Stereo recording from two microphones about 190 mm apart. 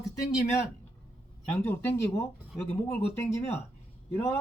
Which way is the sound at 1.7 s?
10° left (ahead or behind).